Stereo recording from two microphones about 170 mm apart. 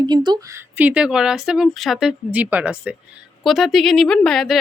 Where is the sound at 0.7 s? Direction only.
10° right (ahead or behind).